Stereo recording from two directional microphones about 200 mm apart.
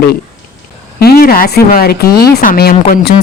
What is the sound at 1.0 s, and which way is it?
Speech, 50° left (ahead or behind).